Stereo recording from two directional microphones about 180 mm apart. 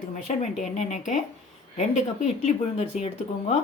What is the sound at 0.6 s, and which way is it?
Speech, 40° left (ahead or behind).